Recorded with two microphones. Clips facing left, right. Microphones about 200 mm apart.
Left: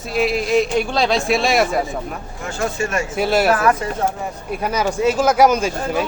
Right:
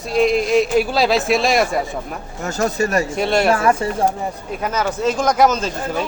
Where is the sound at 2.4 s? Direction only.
40° right (ahead or behind).